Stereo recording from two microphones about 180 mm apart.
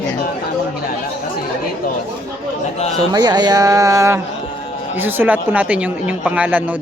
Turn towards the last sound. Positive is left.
turn(degrees=-10)  # may be behind; listen again after turning